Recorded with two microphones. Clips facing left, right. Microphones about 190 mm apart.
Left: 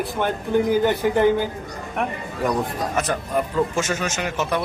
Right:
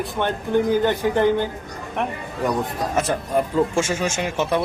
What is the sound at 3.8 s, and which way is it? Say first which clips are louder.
Speech: right 2 dB; 30° right (ahead or behind).